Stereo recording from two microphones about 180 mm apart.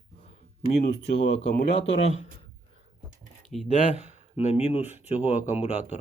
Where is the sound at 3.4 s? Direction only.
Centre (ahead or behind).